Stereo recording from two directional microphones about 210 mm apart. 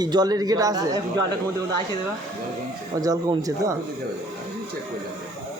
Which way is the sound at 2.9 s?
15° right (ahead or behind).